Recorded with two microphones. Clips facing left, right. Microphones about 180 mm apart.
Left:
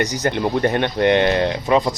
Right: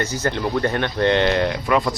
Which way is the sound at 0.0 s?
15° left (ahead or behind).